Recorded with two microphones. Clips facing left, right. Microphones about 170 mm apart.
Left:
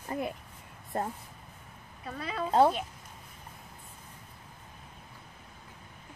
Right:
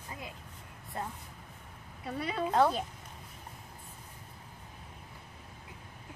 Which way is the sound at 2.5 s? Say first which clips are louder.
Left 4 dB; 30° left (ahead or behind).